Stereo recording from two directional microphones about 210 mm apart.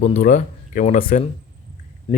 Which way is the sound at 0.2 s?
40° left (ahead or behind).